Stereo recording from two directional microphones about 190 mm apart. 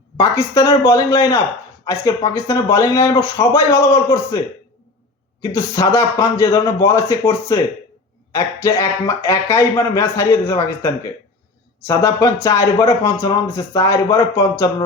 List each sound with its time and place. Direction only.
0.2 s speech: 15° left (ahead or behind)
5.4 s speech: 15° left (ahead or behind)